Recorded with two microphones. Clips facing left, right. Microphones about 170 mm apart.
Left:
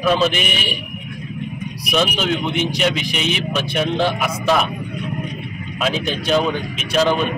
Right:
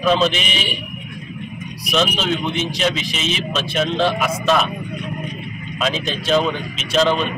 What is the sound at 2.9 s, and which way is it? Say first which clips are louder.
Speech: left 2 dB; 60° left (ahead or behind).